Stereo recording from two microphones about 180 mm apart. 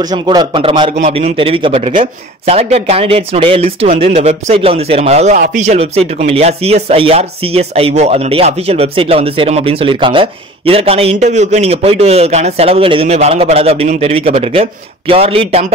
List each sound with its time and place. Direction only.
0.0 s a man's voice: 20° right (ahead or behind)